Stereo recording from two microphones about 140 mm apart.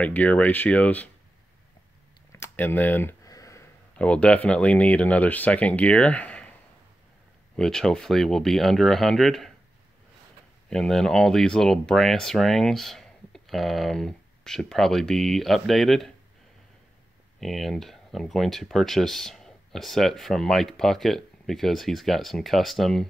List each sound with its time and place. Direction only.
0.0 s speech: 10° left (ahead or behind)
2.3 s a sound: 15° left (ahead or behind)
4.0 s speech: 10° left (ahead or behind)
7.5 s speech: 5° left (ahead or behind)
10.7 s speech: 5° left (ahead or behind)
17.4 s speech: centre (ahead or behind)